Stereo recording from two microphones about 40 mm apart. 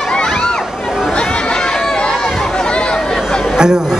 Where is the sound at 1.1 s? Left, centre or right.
Left.